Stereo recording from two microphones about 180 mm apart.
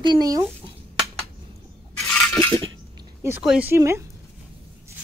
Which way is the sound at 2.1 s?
10° left (ahead or behind).